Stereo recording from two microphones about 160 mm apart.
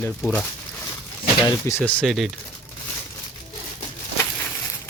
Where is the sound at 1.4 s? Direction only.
20° left (ahead or behind); by 2.2 s centre (ahead or behind).